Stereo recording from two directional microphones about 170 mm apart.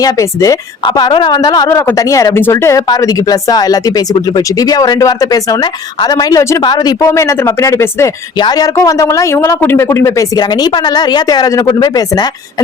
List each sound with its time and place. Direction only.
0.0 s speech: 20° left (ahead or behind)